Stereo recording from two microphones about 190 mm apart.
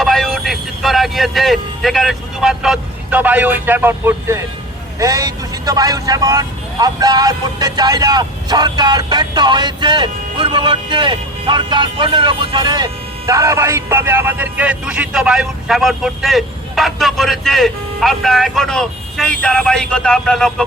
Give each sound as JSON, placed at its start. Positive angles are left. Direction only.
{"t": 0.0, "sound": "speech", "side_deg": 0}